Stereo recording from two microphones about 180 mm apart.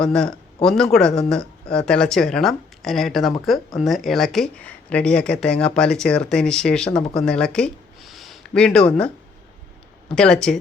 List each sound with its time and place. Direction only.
0.0 s speech: 5° left (ahead or behind)
10.2 s speech: 5° left (ahead or behind)